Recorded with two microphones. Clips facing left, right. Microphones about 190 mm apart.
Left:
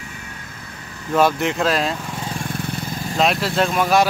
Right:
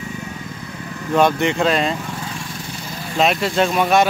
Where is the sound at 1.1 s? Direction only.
Centre (ahead or behind).